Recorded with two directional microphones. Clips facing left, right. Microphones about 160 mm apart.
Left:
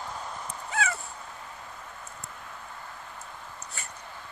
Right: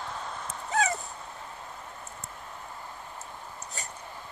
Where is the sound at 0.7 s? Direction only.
40° right (ahead or behind).